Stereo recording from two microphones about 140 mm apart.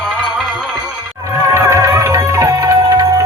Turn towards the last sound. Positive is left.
turn(degrees=-25)  # may be behind; listen again after turning